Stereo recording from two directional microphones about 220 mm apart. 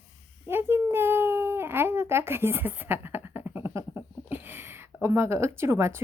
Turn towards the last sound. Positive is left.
turn(degrees=-10)  # may be behind; listen again after turning